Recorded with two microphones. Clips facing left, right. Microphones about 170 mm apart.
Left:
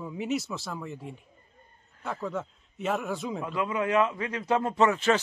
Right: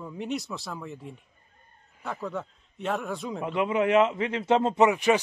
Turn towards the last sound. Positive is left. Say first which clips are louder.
# right 2 dB
turn(degrees=-15)  # may be behind; listen again after turning